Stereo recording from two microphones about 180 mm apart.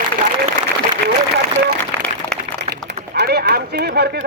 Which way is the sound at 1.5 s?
10° left (ahead or behind).